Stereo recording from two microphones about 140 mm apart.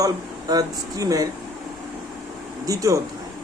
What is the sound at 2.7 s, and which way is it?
Speech, 25° right (ahead or behind).